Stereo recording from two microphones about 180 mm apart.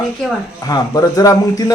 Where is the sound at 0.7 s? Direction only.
20° left (ahead or behind).